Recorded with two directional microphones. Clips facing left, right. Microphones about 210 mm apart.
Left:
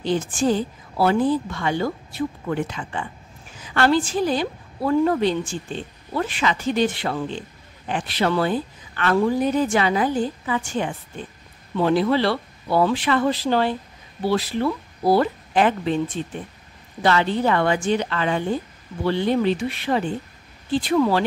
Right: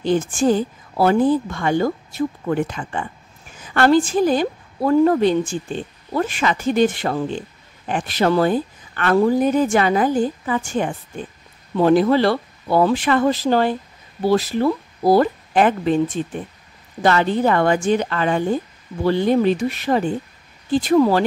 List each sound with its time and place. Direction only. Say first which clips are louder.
0.0 s a woman's voice: right 4 dB; 50° right (ahead or behind)